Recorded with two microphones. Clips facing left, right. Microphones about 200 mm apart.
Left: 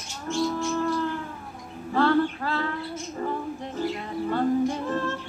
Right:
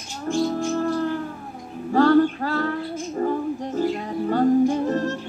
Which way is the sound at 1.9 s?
45° right (ahead or behind).